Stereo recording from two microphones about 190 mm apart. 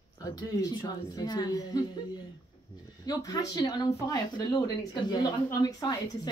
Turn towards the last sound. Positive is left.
turn(degrees=20)  # may be behind; listen again after turning